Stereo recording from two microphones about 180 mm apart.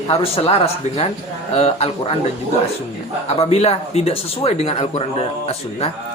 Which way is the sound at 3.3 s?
35° left (ahead or behind).